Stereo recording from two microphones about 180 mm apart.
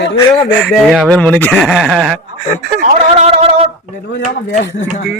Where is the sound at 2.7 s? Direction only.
55° right (ahead or behind).